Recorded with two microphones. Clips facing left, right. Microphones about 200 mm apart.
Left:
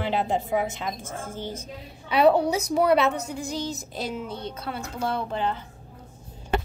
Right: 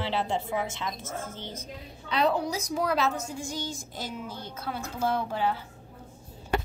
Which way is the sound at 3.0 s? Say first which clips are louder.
Left 4 dB; centre (ahead or behind).